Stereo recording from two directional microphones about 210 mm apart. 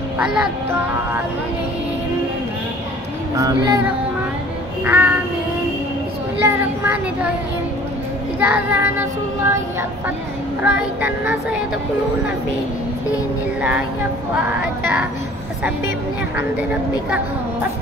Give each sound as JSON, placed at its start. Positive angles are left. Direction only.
{"t": 0.3, "sound": "speech", "side_deg": -5}
{"t": 3.3, "sound": "child singing", "side_deg": -15}
{"t": 4.8, "sound": "child singing", "side_deg": -10}
{"t": 6.4, "sound": "child singing", "side_deg": -10}
{"t": 8.4, "sound": "child singing", "side_deg": -10}
{"t": 13.6, "sound": "child singing", "side_deg": -5}